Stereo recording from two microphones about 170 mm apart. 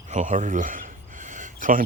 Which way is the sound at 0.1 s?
45° right (ahead or behind).